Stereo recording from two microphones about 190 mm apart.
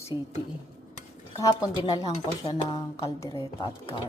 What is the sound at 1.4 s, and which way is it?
Speech, 20° left (ahead or behind).